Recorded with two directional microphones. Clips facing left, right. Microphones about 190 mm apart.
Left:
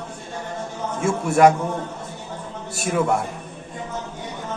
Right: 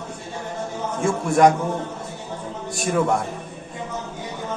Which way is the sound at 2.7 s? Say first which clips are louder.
Even; 5° left (ahead or behind).